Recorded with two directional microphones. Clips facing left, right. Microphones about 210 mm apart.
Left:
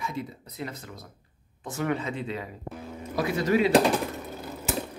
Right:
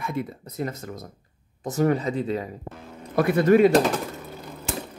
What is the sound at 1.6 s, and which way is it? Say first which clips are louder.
Speech: right 7 dB; 40° right (ahead or behind).